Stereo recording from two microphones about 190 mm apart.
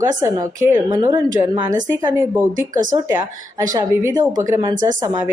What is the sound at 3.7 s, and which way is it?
Speech, 15° right (ahead or behind).